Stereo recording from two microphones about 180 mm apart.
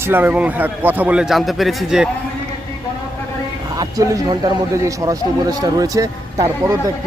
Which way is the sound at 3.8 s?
20° right (ahead or behind).